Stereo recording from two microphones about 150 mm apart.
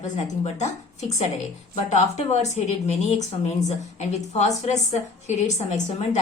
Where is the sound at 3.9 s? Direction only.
50° left (ahead or behind).